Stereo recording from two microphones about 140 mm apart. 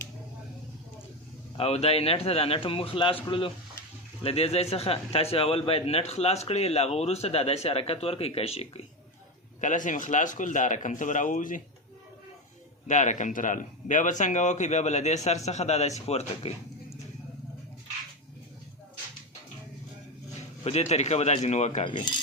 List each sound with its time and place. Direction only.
1.5 s speech: 45° left (ahead or behind)
9.6 s speech: 65° left (ahead or behind)
12.9 s speech: 60° left (ahead or behind)
20.7 s speech: 50° left (ahead or behind)
21.8 s speech: 35° left (ahead or behind)